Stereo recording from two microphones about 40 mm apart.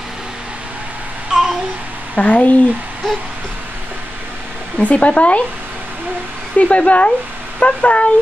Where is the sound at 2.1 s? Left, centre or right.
Left.